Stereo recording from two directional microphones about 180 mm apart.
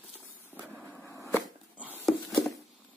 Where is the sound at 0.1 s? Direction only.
5° right (ahead or behind).